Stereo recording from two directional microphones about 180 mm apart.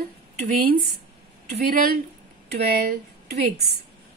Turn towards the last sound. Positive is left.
turn(degrees=-60)  # may be behind; listen again after turning